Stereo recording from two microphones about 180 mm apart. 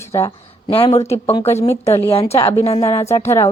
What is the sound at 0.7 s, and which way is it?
Speech, 30° left (ahead or behind).